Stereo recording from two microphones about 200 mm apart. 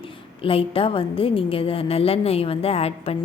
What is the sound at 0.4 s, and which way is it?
A woman's voice, 30° left (ahead or behind).